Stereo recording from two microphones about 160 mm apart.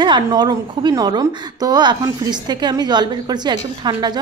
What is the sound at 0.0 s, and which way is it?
A woman's voice, 25° right (ahead or behind).